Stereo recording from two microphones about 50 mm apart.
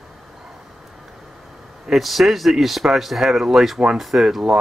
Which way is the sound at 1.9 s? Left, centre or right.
Centre.